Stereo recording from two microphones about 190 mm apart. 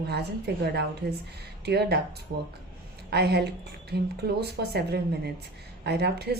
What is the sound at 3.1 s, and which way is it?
Speech, 60° right (ahead or behind).